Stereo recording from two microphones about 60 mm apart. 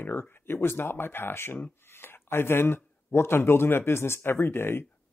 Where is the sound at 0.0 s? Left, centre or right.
Left.